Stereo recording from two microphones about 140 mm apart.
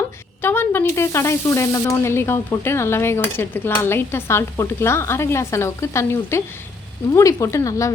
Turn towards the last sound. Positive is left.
turn(degrees=25)  # may be behind; listen again after turning